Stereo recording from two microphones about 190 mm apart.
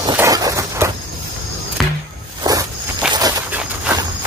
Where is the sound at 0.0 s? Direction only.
20° right (ahead or behind).